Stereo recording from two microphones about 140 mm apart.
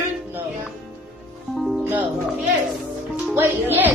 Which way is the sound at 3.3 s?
15° right (ahead or behind).